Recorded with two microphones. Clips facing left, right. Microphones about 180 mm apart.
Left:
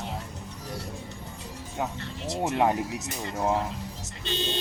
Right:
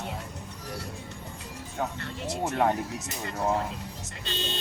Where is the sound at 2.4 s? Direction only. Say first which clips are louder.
Left 2 dB; 20° left (ahead or behind).